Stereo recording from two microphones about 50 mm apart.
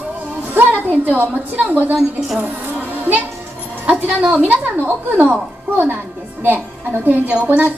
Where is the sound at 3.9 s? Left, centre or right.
Right.